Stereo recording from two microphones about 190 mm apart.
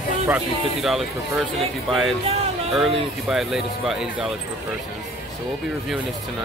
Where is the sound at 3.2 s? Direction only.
Centre (ahead or behind).